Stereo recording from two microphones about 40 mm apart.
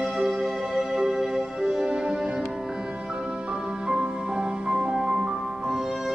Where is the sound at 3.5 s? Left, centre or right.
Centre.